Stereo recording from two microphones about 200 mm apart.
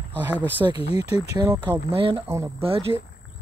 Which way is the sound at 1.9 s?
25° right (ahead or behind).